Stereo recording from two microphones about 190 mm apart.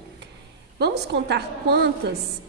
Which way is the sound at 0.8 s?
60° right (ahead or behind).